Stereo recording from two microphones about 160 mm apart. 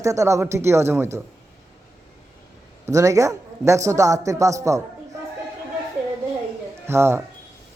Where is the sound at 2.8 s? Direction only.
20° right (ahead or behind).